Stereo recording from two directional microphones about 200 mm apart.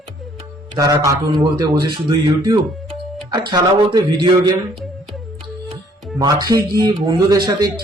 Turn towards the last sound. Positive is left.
turn(degrees=-20)  # may be behind; listen again after turning